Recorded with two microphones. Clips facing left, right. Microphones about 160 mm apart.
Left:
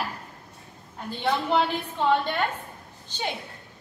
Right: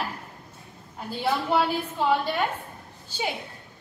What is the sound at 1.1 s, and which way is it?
A woman's voice, 5° right (ahead or behind).